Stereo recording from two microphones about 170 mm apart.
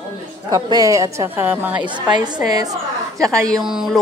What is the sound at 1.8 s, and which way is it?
A woman's voice, 25° right (ahead or behind).